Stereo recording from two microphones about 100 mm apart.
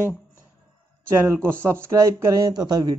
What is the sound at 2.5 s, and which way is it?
Speech, 45° right (ahead or behind).